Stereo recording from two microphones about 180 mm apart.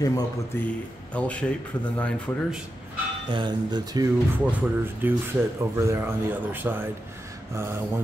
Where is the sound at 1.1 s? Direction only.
5° left (ahead or behind).